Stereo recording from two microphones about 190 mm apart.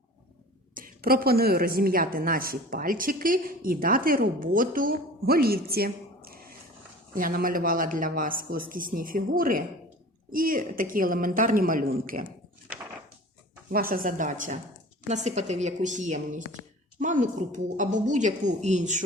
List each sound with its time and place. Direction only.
0.7 s a woman's voice: 45° right (ahead or behind)
13.7 s a woman's voice: 50° right (ahead or behind)